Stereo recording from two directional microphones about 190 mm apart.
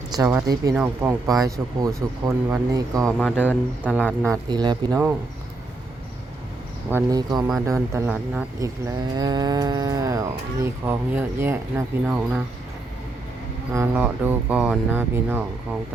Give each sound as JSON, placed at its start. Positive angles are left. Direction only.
{"t": 0.1, "sound": "livestock", "side_deg": -20}
{"t": 0.7, "sound": "livestock", "side_deg": -5}
{"t": 1.3, "sound": "livestock", "side_deg": -15}
{"t": 3.2, "sound": "speech", "side_deg": 10}
{"t": 4.2, "sound": "livestock", "side_deg": -20}
{"t": 6.9, "sound": "speech", "side_deg": -20}
{"t": 7.6, "sound": "livestock", "side_deg": -15}
{"t": 8.6, "sound": "livestock", "side_deg": -20}
{"t": 13.7, "sound": "livestock", "side_deg": -10}